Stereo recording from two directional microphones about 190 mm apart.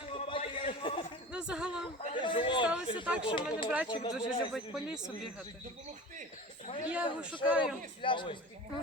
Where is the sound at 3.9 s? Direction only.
25° left (ahead or behind).